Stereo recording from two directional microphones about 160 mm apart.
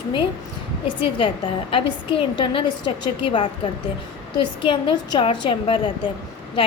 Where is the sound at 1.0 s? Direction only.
35° left (ahead or behind).